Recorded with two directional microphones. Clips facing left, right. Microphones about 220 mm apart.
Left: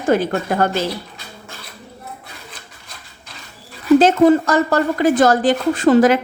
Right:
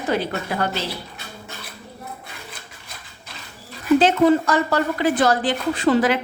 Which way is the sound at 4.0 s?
45° left (ahead or behind).